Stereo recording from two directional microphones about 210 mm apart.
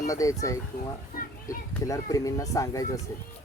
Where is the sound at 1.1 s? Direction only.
40° left (ahead or behind).